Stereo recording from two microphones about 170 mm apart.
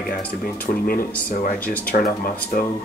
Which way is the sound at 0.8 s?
55° left (ahead or behind).